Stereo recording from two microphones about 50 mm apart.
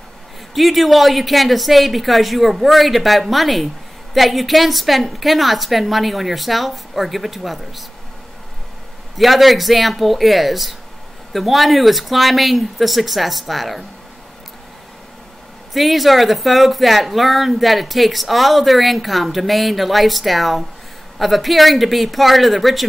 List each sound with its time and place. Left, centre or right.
0.6 s speech: centre
9.1 s speech: centre
15.7 s speech: centre